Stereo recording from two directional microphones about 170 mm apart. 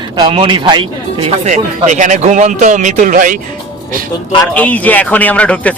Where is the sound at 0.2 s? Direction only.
30° right (ahead or behind).